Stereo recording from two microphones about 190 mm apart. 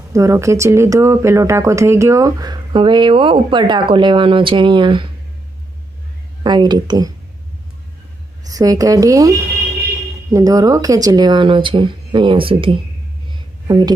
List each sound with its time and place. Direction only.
0.1 s speech: 15° right (ahead or behind)
6.4 s speech: 25° right (ahead or behind)
8.4 s speech: 20° right (ahead or behind)
10.3 s speech: 20° right (ahead or behind)
13.3 s a sound: 20° right (ahead or behind)